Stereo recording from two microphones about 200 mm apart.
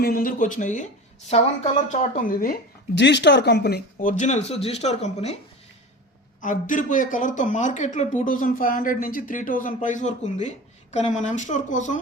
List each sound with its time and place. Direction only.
0.0 s speech: 45° left (ahead or behind)
3.0 s speech: 60° left (ahead or behind); by 5.4 s 30° left (ahead or behind)
6.4 s speech: 40° left (ahead or behind)